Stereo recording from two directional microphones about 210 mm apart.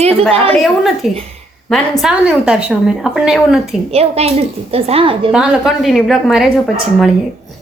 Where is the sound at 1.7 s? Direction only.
Centre (ahead or behind).